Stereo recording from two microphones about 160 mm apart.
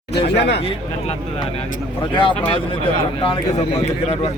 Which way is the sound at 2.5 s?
35° left (ahead or behind).